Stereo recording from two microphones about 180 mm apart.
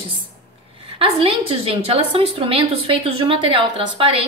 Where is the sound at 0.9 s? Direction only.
30° right (ahead or behind).